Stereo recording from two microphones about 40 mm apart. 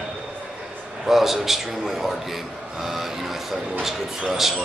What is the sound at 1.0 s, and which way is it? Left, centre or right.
Speech, centre.